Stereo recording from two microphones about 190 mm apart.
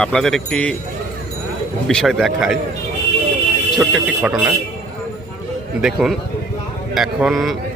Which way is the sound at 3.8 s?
5° right (ahead or behind).